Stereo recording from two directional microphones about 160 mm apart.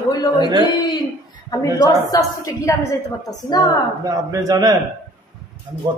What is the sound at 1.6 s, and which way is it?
A woman's voice, 20° left (ahead or behind).